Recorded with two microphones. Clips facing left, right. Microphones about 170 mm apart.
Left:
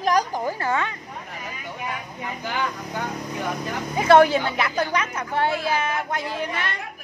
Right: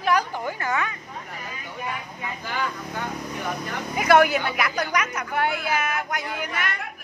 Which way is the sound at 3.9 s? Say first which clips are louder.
Left 3 dB; 30° left (ahead or behind).